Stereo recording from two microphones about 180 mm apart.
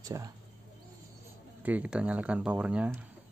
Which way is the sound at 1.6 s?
10° right (ahead or behind).